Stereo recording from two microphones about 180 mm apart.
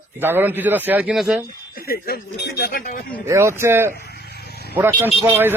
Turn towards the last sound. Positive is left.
turn(degrees=-15)  # may be behind; listen again after turning